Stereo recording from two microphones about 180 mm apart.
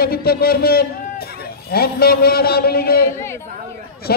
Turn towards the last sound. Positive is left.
turn(degrees=60)  # may be behind; listen again after turning